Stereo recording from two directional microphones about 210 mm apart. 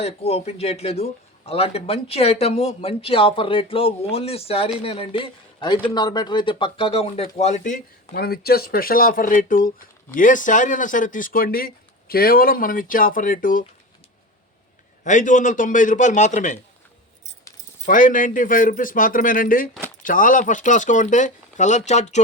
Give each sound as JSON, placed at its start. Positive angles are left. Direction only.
{"t": 0.0, "sound": "speech", "side_deg": 30}
{"t": 15.0, "sound": "speech", "side_deg": 35}
{"t": 17.8, "sound": "speech", "side_deg": 40}